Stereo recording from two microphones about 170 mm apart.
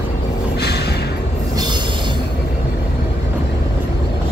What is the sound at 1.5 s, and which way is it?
Train wheels squealing, 25° right (ahead or behind).